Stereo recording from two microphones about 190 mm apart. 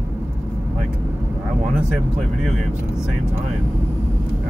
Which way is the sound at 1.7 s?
5° right (ahead or behind).